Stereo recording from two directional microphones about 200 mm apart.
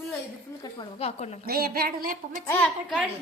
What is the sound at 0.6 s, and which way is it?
Speech, 25° left (ahead or behind).